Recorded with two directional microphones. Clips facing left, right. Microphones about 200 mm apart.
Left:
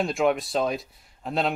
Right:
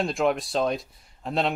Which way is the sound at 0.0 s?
Centre (ahead or behind).